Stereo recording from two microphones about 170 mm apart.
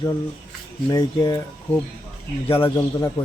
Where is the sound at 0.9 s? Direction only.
25° left (ahead or behind).